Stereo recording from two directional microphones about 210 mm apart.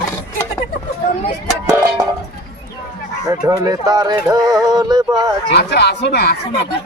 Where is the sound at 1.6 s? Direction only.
15° right (ahead or behind).